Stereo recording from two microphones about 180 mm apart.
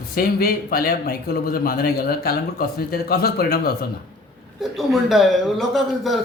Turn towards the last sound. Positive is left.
turn(degrees=0)  # may be behind; listen again after turning